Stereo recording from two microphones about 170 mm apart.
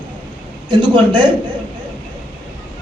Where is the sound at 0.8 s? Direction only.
25° right (ahead or behind).